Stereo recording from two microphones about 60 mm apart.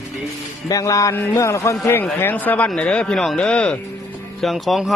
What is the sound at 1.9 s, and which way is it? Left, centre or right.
Speech, left.